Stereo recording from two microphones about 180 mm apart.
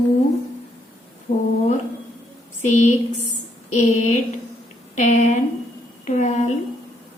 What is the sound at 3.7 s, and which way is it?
A woman's voice, 40° left (ahead or behind).